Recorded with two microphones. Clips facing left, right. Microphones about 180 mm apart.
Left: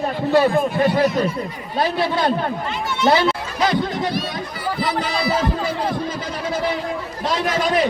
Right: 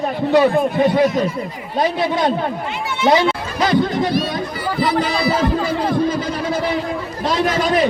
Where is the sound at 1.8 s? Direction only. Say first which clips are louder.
Right 2 dB; 20° right (ahead or behind).